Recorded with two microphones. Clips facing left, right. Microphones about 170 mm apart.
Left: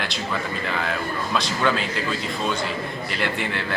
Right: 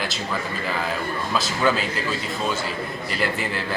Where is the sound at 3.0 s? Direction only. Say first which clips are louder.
Right 2 dB; centre (ahead or behind).